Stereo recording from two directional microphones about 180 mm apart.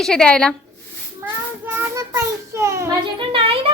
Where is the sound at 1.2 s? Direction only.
10° right (ahead or behind).